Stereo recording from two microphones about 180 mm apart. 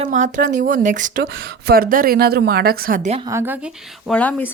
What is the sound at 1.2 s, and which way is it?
A woman's voice, 90° right.